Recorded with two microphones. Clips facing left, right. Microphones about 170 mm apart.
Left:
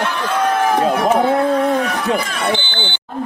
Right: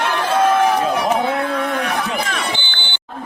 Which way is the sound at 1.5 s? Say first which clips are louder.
Left 5 dB; 35° left (ahead or behind).